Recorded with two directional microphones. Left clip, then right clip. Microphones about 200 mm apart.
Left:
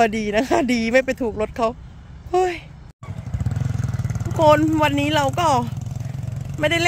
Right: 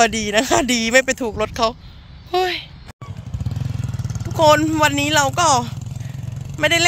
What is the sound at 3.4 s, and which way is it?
Vehicle, 20° left (ahead or behind).